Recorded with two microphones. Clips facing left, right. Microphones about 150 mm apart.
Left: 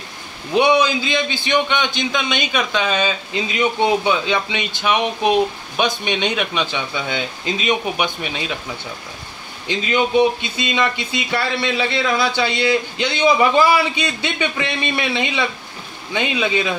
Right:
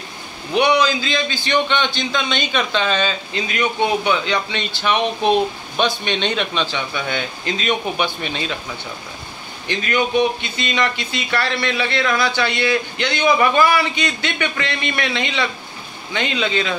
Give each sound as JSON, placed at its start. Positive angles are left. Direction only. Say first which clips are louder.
{"t": 0.5, "sound": "a man's voice", "louder": "left 1 dB", "side_deg": 20}
{"t": 9.7, "sound": "a man's voice", "louder": "left 1 dB", "side_deg": 20}